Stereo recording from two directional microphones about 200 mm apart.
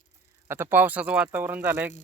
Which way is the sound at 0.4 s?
10° right (ahead or behind).